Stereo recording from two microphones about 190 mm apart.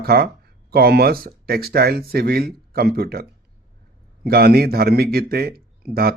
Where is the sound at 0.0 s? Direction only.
55° right (ahead or behind).